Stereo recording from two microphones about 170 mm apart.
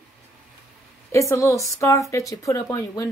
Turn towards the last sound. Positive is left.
turn(degrees=20)  # may be behind; listen again after turning